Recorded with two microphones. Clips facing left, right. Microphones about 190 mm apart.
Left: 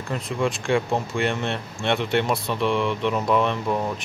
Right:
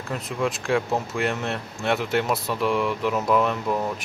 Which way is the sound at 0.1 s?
Centre (ahead or behind).